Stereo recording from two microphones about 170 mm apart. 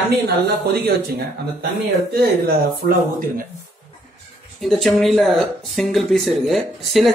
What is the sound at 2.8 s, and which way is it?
Speech, 55° right (ahead or behind).